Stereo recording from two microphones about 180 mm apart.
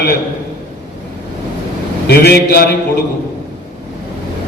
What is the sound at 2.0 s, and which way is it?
Speech, 60° left (ahead or behind).